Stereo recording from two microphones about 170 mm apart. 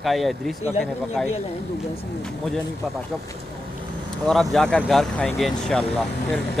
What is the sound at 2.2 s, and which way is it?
Speech, 5° left (ahead or behind).